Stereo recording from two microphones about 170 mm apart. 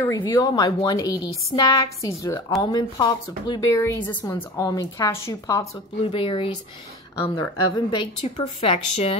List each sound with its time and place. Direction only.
0.0 s a woman's voice: 15° left (ahead or behind)
3.7 s speech: 10° left (ahead or behind)
6.0 s a woman's voice: 30° left (ahead or behind)
8.4 s speech: 40° left (ahead or behind)